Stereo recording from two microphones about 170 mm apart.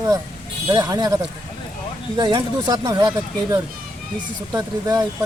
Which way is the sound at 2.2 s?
25° right (ahead or behind).